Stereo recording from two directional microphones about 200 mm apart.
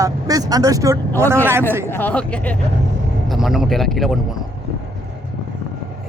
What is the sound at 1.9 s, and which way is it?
Speech, 10° left (ahead or behind).